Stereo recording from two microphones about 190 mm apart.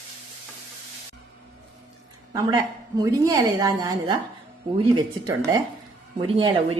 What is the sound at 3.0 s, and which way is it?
A woman's voice, 20° right (ahead or behind).